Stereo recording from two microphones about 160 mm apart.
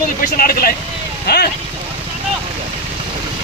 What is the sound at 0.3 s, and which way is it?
Speech, 65° left (ahead or behind).